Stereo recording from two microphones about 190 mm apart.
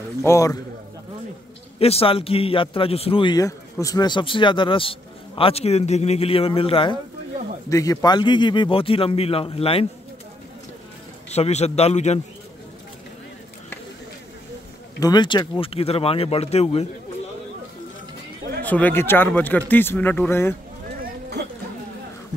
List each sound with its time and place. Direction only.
0.2 s a man's voice: 15° left (ahead or behind)
1.8 s a man's voice: 30° left (ahead or behind)
7.7 s a man's voice: 15° left (ahead or behind)
11.2 s speech: 35° left (ahead or behind)
15.0 s speech: 20° left (ahead or behind)
18.6 s a man's voice: 10° left (ahead or behind)